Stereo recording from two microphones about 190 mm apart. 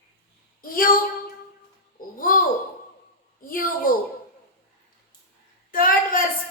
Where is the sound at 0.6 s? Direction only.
50° left (ahead or behind).